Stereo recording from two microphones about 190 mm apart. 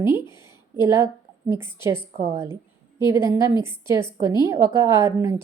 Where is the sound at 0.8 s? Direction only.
15° right (ahead or behind).